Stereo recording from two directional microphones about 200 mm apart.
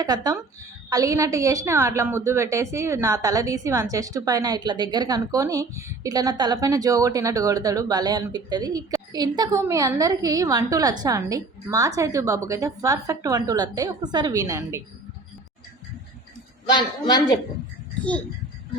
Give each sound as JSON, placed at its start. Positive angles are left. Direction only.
{"t": 0.0, "sound": "a woman's voice", "side_deg": -20}
{"t": 16.6, "sound": "a woman's voice", "side_deg": 20}